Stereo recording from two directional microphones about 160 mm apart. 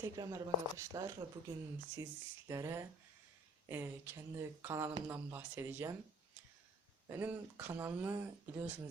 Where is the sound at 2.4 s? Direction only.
20° right (ahead or behind).